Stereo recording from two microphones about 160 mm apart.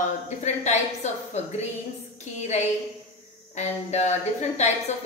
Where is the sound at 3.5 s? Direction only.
45° left (ahead or behind).